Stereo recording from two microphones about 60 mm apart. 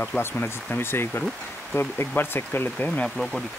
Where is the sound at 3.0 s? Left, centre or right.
Centre.